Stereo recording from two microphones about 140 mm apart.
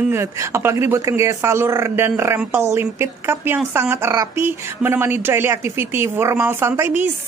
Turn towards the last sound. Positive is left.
turn(degrees=-15)  # may be behind; listen again after turning